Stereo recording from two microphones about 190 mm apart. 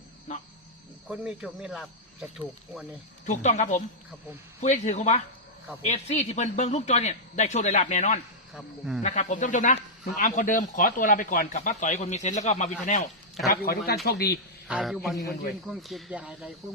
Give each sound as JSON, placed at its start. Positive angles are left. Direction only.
{"t": 1.0, "sound": "speech", "side_deg": -5}
{"t": 3.2, "sound": "speech", "side_deg": 40}
{"t": 13.5, "sound": "speech", "side_deg": 50}
{"t": 14.7, "sound": "speech", "side_deg": -5}
{"t": 15.2, "sound": "a man's voice", "side_deg": 50}
{"t": 15.6, "sound": "speech", "side_deg": 0}